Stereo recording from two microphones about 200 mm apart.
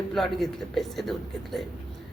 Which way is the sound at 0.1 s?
Centre (ahead or behind).